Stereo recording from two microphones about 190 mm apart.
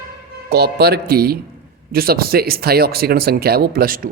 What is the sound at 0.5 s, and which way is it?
Speech, 55° right (ahead or behind).